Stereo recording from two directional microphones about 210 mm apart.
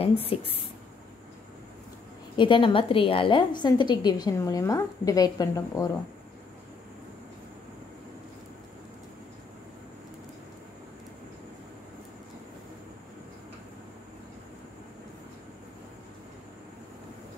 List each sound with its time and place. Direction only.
0.2 s a woman's voice: 25° left (ahead or behind)
2.3 s a woman's voice: 25° left (ahead or behind)